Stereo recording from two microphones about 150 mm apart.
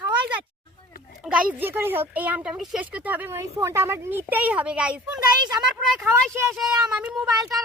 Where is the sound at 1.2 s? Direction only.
10° right (ahead or behind).